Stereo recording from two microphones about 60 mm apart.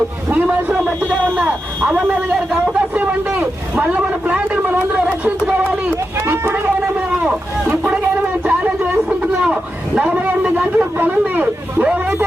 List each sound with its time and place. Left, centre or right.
1.4 s speech: right
2.5 s a sound: right
3.8 s vehicle: right
6.1 s run: right
8.4 s a sound: right
9.9 s a man's voice: centre